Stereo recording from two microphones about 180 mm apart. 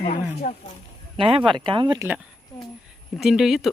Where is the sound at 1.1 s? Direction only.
30° right (ahead or behind).